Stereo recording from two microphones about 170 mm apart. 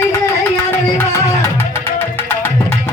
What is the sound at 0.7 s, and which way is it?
Music, 10° left (ahead or behind).